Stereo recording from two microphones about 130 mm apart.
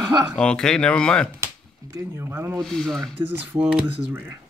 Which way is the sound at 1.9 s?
20° right (ahead or behind).